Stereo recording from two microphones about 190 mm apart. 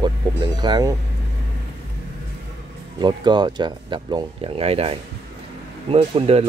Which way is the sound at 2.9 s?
25° right (ahead or behind).